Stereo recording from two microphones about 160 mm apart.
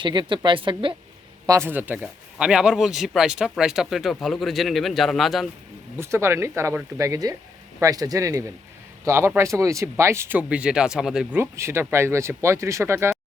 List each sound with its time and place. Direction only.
0.0 s speech: 30° right (ahead or behind)
1.5 s speech: 15° right (ahead or behind); by 5.5 s centre (ahead or behind)
6.0 s speech: 15° right (ahead or behind)
11.3 s speech: 15° right (ahead or behind)